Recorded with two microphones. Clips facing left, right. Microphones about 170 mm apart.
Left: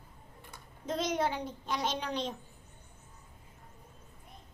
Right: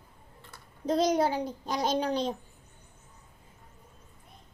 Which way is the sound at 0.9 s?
35° right (ahead or behind).